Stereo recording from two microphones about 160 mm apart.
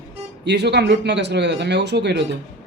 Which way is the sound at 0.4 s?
90° right.